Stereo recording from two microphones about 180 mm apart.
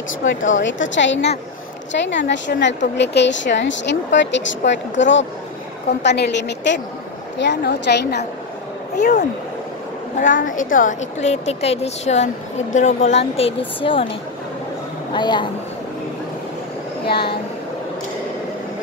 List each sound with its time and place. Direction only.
0.5 s a woman's voice: 90° left
6.0 s a woman's voice: 75° left (ahead or behind)
8.9 s a woman's voice: 40° left (ahead or behind)
10.2 s a woman's voice: 45° left (ahead or behind); by 14.0 s 30° left (ahead or behind)
15.1 s a woman's voice: 25° left (ahead or behind)
17.0 s speech: 60° left (ahead or behind)